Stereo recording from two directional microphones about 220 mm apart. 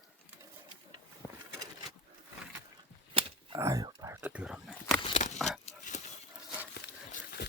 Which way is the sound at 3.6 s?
15° right (ahead or behind).